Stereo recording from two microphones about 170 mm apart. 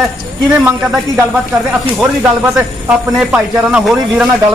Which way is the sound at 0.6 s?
10° right (ahead or behind).